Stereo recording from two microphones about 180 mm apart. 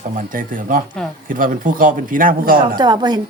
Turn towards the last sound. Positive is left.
turn(degrees=-25)  # may be behind; listen again after turning